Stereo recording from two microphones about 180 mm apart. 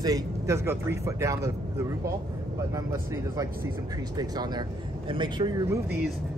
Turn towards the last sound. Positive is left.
turn(degrees=-20)  # may be behind; listen again after turning